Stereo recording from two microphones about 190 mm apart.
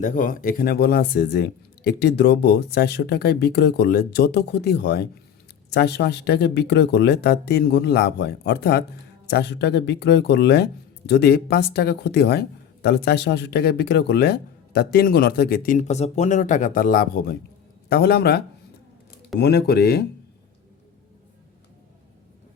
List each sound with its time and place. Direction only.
0.0 s speech: 45° left (ahead or behind)